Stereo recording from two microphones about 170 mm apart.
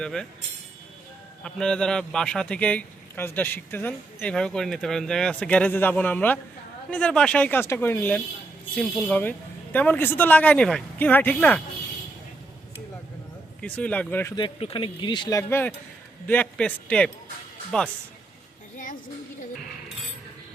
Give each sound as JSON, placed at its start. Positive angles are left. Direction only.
{"t": 0.0, "sound": "speech", "side_deg": 5}
{"t": 1.5, "sound": "a man's voice", "side_deg": 5}
{"t": 13.6, "sound": "a man's voice", "side_deg": 5}
{"t": 14.3, "sound": "a man's voice", "side_deg": 30}